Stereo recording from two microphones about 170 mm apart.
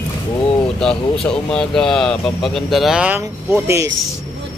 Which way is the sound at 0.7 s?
5° left (ahead or behind).